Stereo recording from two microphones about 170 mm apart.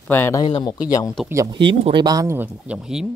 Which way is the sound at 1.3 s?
20° right (ahead or behind).